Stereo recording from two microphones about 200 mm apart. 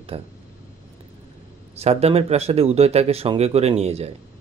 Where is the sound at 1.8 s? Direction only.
30° right (ahead or behind).